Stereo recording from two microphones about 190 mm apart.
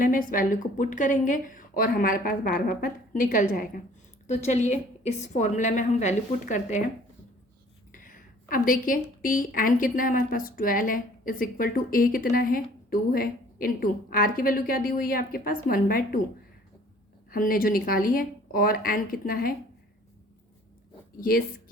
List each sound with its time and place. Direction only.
0.0 s a woman's voice: 45° left (ahead or behind)
7.9 s a woman's voice: 45° left (ahead or behind)
17.3 s a woman's voice: 45° left (ahead or behind)
21.2 s a woman's voice: 50° left (ahead or behind)